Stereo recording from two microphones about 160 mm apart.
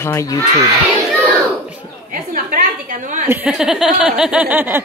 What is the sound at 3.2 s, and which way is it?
Speech, 5° right (ahead or behind).